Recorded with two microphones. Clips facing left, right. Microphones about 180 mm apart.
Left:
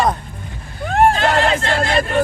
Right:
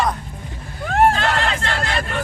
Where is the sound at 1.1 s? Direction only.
20° left (ahead or behind).